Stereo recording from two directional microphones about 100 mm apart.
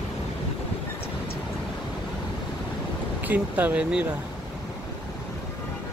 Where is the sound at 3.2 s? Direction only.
15° right (ahead or behind).